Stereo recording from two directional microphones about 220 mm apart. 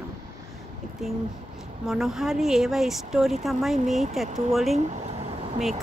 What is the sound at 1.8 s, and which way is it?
Speech, centre (ahead or behind).